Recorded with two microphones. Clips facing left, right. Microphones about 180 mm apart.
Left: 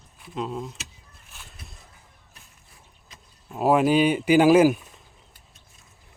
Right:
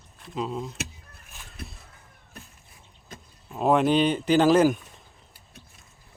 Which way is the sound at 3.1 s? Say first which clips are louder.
Right 9 dB; 50° right (ahead or behind).